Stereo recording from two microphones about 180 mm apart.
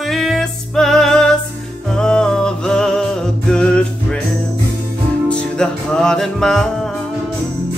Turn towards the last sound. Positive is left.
turn(degrees=5)  # may be behind; listen again after turning